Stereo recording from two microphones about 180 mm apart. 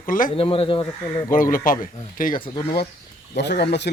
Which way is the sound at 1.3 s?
50° left (ahead or behind).